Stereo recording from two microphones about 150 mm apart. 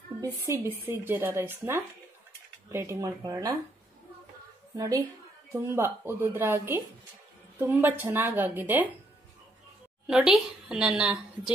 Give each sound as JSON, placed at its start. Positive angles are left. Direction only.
{"t": 0.2, "sound": "speech", "side_deg": -20}
{"t": 4.7, "sound": "speech", "side_deg": -25}
{"t": 10.0, "sound": "a woman's voice", "side_deg": -5}